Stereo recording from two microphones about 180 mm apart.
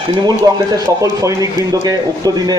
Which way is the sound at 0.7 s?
20° right (ahead or behind).